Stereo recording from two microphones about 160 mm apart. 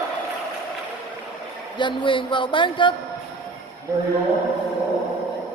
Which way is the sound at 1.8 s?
30° left (ahead or behind).